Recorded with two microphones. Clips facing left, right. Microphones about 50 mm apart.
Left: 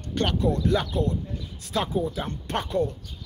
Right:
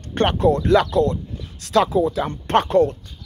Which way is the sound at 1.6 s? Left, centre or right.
Right.